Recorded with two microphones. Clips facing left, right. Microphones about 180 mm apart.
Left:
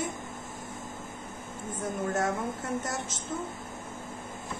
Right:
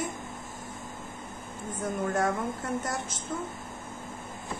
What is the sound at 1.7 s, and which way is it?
A woman's voice, 25° left (ahead or behind).